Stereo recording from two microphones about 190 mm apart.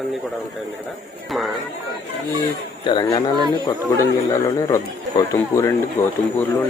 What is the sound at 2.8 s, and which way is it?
Speech, 25° left (ahead or behind).